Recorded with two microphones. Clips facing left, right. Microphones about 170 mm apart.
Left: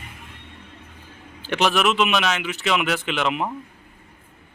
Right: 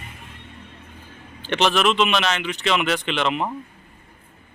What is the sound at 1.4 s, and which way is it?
Speech, 5° left (ahead or behind).